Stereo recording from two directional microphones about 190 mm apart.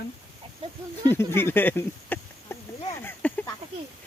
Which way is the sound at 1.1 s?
10° left (ahead or behind).